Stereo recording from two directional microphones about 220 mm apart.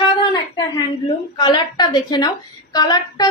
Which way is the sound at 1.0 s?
20° left (ahead or behind).